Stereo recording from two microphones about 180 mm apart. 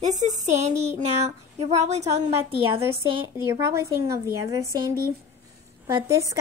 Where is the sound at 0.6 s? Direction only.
40° right (ahead or behind).